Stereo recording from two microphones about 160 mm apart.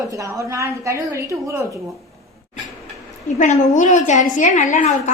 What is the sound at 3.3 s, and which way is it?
A woman's voice, 50° left (ahead or behind).